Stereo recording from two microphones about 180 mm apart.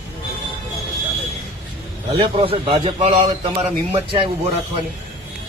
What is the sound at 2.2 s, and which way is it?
A man's voice, 30° right (ahead or behind).